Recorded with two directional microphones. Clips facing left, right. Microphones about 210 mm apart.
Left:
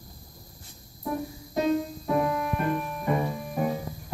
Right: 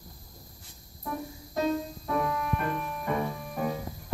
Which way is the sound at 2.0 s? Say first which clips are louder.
Left 3 dB; 20° left (ahead or behind).